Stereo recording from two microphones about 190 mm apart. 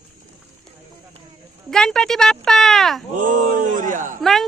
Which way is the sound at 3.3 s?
45° right (ahead or behind).